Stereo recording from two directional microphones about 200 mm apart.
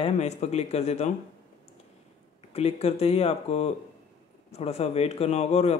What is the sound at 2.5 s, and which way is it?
Speech, 30° left (ahead or behind).